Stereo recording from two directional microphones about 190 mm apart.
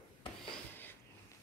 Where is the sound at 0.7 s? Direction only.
10° left (ahead or behind).